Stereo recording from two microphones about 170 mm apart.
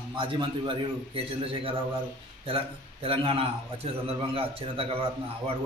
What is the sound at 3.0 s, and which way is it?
A man's voice, 30° right (ahead or behind).